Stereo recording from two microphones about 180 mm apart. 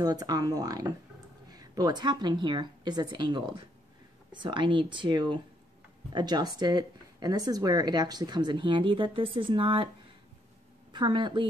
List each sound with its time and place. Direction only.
0.0 s speech: 20° right (ahead or behind)
10.9 s a woman's voice: 25° right (ahead or behind)